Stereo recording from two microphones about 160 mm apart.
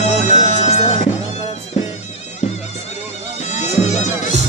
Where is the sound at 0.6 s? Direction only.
40° left (ahead or behind).